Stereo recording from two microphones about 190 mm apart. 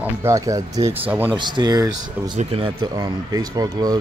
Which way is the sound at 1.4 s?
25° right (ahead or behind).